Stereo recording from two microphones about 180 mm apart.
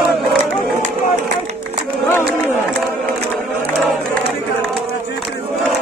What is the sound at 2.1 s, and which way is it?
Run, 15° left (ahead or behind).